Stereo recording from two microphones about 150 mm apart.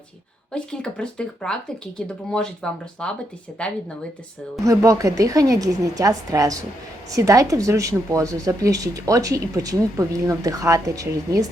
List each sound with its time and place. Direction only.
0.5 s speech: 5° left (ahead or behind)
4.6 s a woman's voice: 20° right (ahead or behind)